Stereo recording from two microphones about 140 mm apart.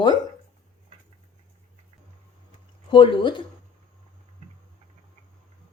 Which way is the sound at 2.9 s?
35° left (ahead or behind).